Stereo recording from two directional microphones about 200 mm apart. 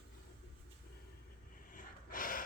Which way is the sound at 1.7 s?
45° left (ahead or behind).